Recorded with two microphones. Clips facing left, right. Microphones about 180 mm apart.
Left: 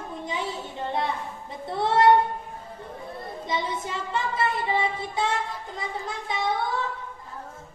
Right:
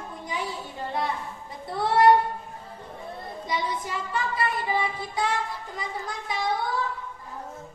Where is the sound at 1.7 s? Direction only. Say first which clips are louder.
Even; 25° left (ahead or behind).